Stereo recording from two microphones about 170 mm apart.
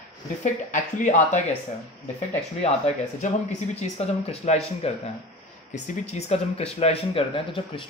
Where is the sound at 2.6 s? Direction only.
40° left (ahead or behind).